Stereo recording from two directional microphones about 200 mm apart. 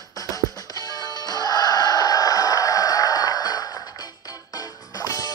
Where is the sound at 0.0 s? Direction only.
15° left (ahead or behind).